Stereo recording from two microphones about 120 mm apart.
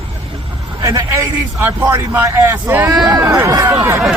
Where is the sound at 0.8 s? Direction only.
25° right (ahead or behind).